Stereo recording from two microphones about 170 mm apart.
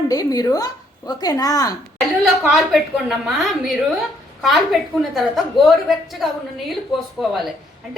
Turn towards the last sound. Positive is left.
turn(degrees=0)  # may be behind; listen again after turning